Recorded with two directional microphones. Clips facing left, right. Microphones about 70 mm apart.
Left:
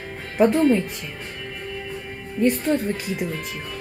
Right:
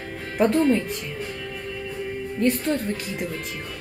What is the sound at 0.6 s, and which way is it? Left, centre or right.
Speech, centre.